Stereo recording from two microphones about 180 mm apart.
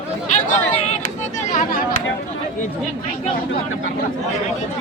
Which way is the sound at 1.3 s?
45° left (ahead or behind).